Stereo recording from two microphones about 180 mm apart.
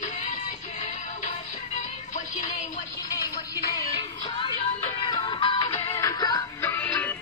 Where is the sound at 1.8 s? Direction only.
45° left (ahead or behind).